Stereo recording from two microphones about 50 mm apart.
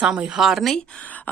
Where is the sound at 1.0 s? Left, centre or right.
Left.